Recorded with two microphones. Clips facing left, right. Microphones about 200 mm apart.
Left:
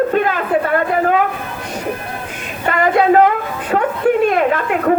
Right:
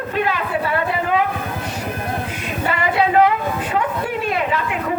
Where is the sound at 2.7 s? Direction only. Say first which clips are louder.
Left 6 dB; 50° left (ahead or behind).